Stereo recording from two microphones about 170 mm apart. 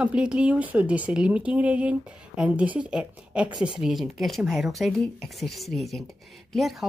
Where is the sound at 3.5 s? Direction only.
25° right (ahead or behind).